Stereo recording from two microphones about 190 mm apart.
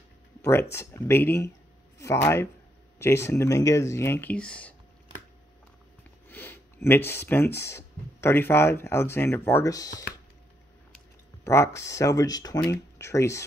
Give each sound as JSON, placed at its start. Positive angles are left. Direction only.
{"t": 0.4, "sound": "speech", "side_deg": 15}
{"t": 6.2, "sound": "speech", "side_deg": 10}
{"t": 11.4, "sound": "speech", "side_deg": 15}